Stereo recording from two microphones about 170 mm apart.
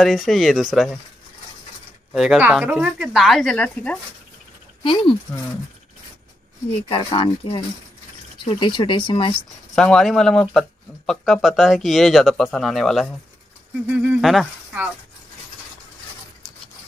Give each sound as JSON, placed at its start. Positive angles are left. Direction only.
{"t": 0.0, "sound": "speech", "side_deg": 0}
{"t": 2.1, "sound": "speech", "side_deg": -5}
{"t": 4.8, "sound": "speech", "side_deg": 30}
{"t": 6.9, "sound": "speech", "side_deg": 30}
{"t": 9.8, "sound": "speech", "side_deg": 5}